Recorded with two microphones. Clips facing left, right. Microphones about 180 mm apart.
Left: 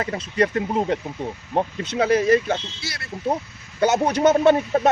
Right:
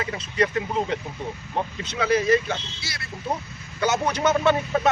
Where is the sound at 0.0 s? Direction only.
50° left (ahead or behind).